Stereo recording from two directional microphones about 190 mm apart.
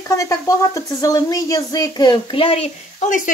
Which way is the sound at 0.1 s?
15° left (ahead or behind).